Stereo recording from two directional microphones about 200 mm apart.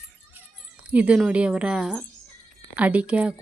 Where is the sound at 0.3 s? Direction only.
5° right (ahead or behind).